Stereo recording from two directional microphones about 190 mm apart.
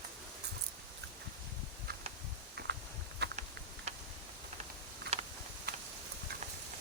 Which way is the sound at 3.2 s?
60° right (ahead or behind).